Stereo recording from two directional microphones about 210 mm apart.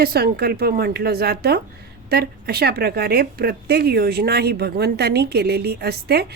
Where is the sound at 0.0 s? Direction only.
45° right (ahead or behind).